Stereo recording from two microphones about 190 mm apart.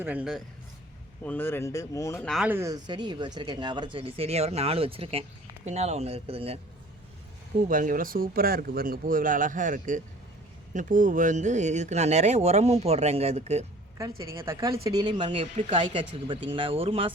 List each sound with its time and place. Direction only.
0.0 s a man's voice: 5° right (ahead or behind)
1.2 s speech: 10° left (ahead or behind)
2.2 s speech: centre (ahead or behind)
2.5 s speech: 15° right (ahead or behind)
7.7 s speech: 45° right (ahead or behind)
14.3 s a man's voice: 15° right (ahead or behind)